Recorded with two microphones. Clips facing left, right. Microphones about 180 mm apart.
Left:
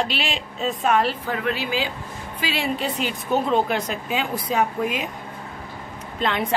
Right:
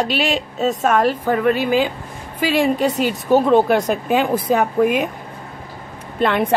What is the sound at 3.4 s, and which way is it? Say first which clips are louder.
A woman's voice: right 8 dB; 50° right (ahead or behind).